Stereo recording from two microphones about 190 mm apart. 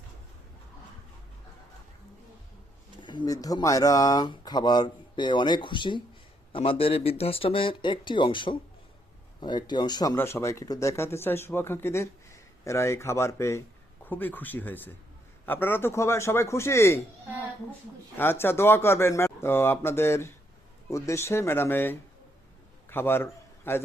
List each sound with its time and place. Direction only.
3.0 s speech: 25° left (ahead or behind)
18.2 s a man's voice: 10° left (ahead or behind)